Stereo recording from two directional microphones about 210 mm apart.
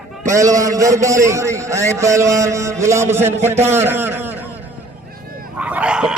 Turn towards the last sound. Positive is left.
turn(degrees=-5)  # may be behind; listen again after turning